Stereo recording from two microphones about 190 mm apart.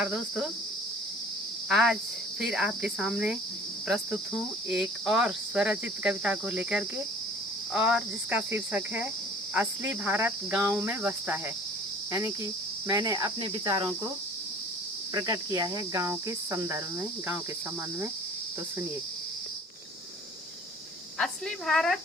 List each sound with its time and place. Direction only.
0.0 s cricket: 5° right (ahead or behind)
1.7 s cricket: centre (ahead or behind)
12.9 s cricket: 20° right (ahead or behind)
15.1 s cricket: 20° right (ahead or behind)
21.7 s cricket: centre (ahead or behind)